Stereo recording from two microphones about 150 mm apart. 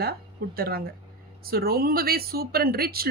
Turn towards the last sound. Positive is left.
turn(degrees=-90)